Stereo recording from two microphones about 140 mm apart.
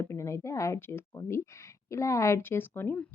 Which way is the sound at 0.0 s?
20° left (ahead or behind).